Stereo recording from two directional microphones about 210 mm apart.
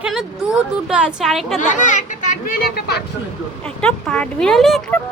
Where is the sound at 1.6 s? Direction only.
35° left (ahead or behind).